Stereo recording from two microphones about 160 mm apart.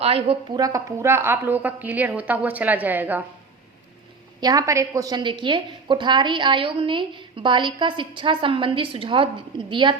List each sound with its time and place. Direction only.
0.0 s a woman's voice: 35° right (ahead or behind)
0.6 s a woman's voice: 20° right (ahead or behind)
4.4 s a woman's voice: 25° right (ahead or behind)